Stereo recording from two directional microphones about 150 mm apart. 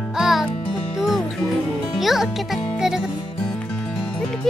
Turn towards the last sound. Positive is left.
turn(degrees=-5)  # may be behind; listen again after turning